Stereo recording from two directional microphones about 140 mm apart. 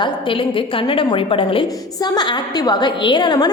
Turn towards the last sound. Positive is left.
turn(degrees=30)  # may be behind; listen again after turning